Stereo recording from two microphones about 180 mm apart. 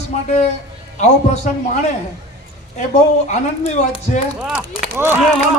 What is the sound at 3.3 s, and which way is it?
Speech, 40° left (ahead or behind).